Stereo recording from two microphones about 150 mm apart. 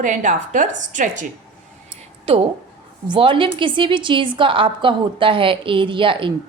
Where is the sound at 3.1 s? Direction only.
35° right (ahead or behind).